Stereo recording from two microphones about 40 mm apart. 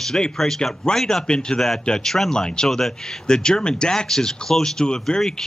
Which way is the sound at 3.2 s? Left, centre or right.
Centre.